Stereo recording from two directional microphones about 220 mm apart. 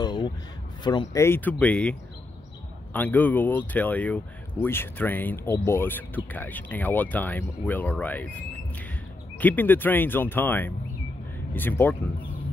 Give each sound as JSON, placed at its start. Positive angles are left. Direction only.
{"t": 0.0, "sound": "a sound", "side_deg": 20}
{"t": 0.8, "sound": "speech", "side_deg": 15}
{"t": 9.4, "sound": "speech", "side_deg": 10}